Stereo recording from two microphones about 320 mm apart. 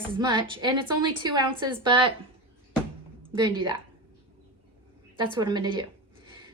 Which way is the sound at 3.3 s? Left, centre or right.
Centre.